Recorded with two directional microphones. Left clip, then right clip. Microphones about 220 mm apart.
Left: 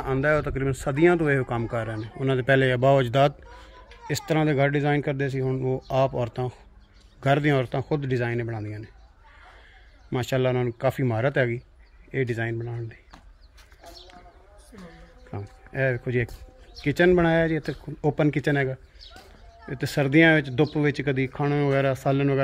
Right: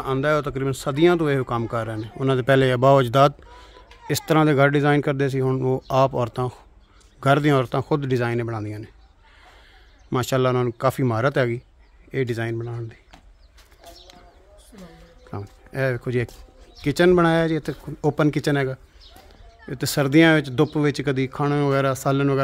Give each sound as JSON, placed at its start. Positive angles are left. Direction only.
{"t": 0.0, "sound": "a man's voice", "side_deg": -20}
{"t": 10.1, "sound": "a man's voice", "side_deg": -35}
{"t": 15.3, "sound": "speech", "side_deg": -25}